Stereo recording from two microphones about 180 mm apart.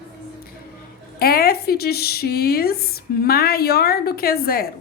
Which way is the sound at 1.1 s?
60° left (ahead or behind).